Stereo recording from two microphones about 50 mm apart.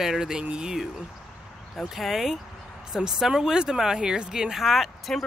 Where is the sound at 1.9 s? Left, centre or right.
Centre.